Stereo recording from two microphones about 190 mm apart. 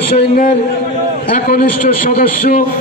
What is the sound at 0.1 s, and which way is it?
A man's voice, 55° left (ahead or behind).